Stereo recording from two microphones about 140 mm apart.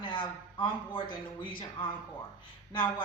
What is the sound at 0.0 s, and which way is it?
A man's voice, 35° left (ahead or behind).